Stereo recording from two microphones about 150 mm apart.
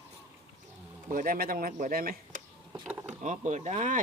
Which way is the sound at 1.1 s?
70° right (ahead or behind).